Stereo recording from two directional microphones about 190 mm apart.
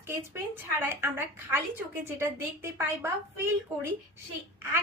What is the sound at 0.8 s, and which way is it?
A woman's voice, 10° right (ahead or behind).